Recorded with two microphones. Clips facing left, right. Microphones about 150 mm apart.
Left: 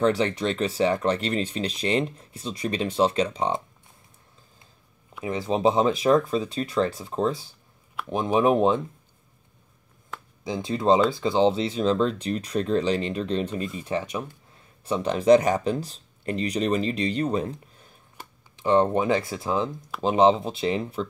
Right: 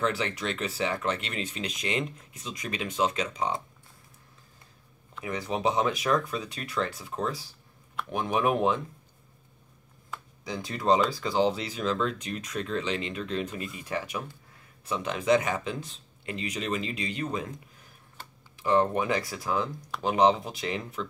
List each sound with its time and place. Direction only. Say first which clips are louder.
0.0 s speech: left 7 dB; 30° left (ahead or behind)
5.2 s speech: left 6 dB; 25° left (ahead or behind)
10.4 s speech: left 6 dB; 25° left (ahead or behind)